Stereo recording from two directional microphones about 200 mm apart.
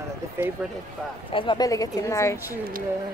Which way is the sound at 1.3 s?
25° left (ahead or behind).